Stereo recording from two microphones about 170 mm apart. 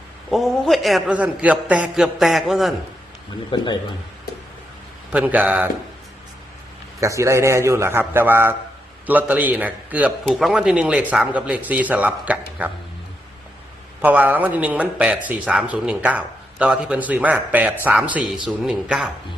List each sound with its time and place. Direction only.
0.3 s a man's voice: centre (ahead or behind)
3.5 s a man's voice: 25° left (ahead or behind)
5.1 s a man's voice: 10° right (ahead or behind)
7.0 s a man's voice: 20° right (ahead or behind)
14.0 s a man's voice: 10° right (ahead or behind)